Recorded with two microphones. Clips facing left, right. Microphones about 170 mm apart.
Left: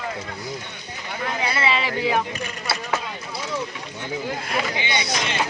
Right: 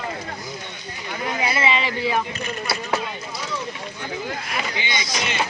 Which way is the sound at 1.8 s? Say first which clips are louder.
Left 1 dB; 5° left (ahead or behind).